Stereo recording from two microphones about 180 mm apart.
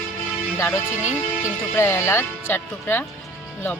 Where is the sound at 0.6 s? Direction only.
15° left (ahead or behind).